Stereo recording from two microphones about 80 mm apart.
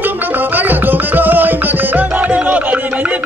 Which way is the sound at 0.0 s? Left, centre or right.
Right.